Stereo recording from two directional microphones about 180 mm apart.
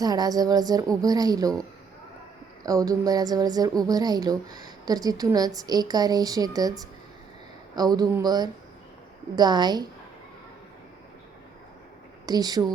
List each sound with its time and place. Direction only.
0.0 s a woman's voice: 20° right (ahead or behind)
2.6 s a woman's voice: 20° right (ahead or behind)
12.2 s speech: 20° right (ahead or behind)